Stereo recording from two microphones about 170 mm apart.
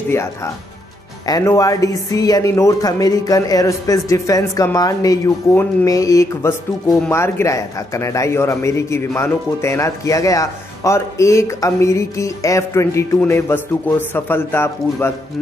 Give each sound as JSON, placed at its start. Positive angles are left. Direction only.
{"t": 0.1, "sound": "a man's voice", "side_deg": 15}